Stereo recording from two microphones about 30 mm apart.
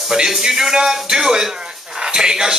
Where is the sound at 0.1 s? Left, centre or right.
Centre.